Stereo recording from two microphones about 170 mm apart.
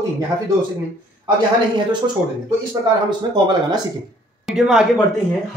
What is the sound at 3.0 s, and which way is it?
Speech, 25° right (ahead or behind).